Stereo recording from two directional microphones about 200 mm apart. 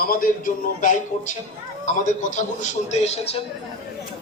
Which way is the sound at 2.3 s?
35° left (ahead or behind).